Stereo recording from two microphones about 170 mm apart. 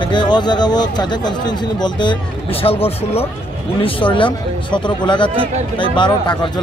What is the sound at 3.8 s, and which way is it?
A man's voice, 30° left (ahead or behind).